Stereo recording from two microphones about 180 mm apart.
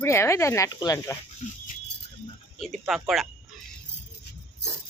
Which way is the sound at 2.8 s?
Centre (ahead or behind).